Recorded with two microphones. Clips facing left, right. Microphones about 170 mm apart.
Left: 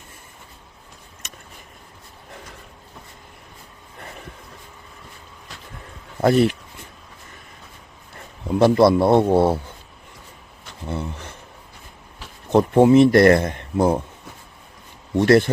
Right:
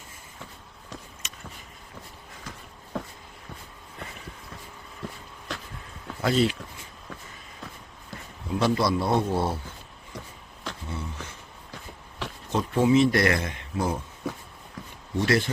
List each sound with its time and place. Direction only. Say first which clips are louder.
2.9 s a sound: right 13 dB; 90° right
6.2 s speech: left 7 dB; 55° left (ahead or behind)
8.4 s speech: left 10 dB; 55° left (ahead or behind)
10.8 s a sound: left 11 dB; 60° left (ahead or behind)
12.5 s speech: left 8 dB; 60° left (ahead or behind)
15.2 s speech: left 9 dB; 55° left (ahead or behind)